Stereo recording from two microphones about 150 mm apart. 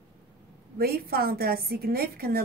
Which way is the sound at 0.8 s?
90° right.